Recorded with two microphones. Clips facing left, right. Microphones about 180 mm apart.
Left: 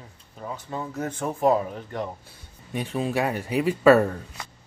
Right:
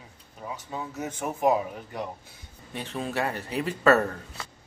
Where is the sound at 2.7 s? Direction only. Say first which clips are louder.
Left 5 dB; 10° left (ahead or behind).